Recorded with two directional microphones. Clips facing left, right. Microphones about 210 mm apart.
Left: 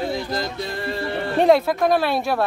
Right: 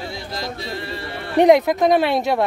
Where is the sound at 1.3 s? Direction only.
15° right (ahead or behind).